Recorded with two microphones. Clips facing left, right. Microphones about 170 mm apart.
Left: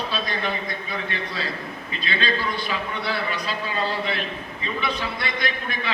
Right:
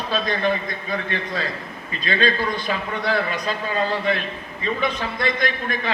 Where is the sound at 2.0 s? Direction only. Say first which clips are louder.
Right 5 dB; 45° right (ahead or behind).